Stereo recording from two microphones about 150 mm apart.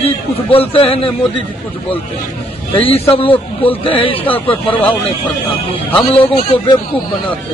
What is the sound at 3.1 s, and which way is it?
Speech, 35° left (ahead or behind).